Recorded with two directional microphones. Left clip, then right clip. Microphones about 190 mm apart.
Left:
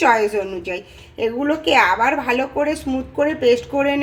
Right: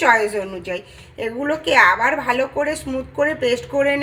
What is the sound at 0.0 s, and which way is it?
A woman's voice, 5° left (ahead or behind).